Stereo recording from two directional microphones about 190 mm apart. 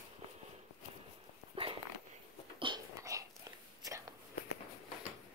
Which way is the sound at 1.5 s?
30° right (ahead or behind).